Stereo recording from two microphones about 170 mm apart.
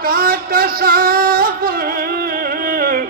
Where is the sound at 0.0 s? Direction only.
60° right (ahead or behind).